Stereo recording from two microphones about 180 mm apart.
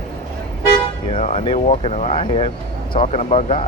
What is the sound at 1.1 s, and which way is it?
Speech, 35° left (ahead or behind).